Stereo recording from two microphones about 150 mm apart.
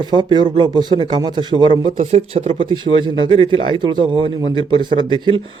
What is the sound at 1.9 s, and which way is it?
Speech, 50° right (ahead or behind).